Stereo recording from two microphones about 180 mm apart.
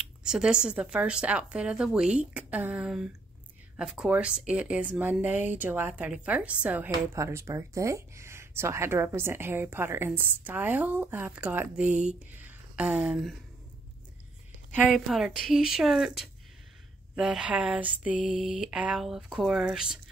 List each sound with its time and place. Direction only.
0.2 s speech: 5° right (ahead or behind)
11.9 s speech: 40° right (ahead or behind)
12.3 s speech: 10° right (ahead or behind)
14.9 s speech: centre (ahead or behind)